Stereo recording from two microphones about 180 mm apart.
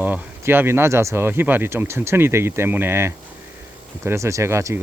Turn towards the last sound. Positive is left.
turn(degrees=-15)  # may be behind; listen again after turning